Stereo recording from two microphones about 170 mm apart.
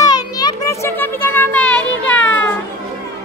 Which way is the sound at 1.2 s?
10° left (ahead or behind).